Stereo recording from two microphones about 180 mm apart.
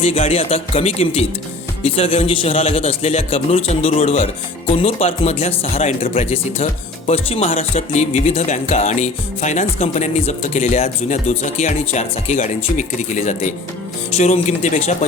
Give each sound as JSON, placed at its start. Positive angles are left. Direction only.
{"t": 0.0, "sound": "speech", "side_deg": 35}